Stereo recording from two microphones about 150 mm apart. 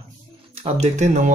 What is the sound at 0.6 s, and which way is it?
Speech, 50° right (ahead or behind).